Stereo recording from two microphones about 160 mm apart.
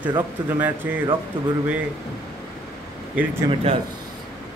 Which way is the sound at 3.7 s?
35° right (ahead or behind).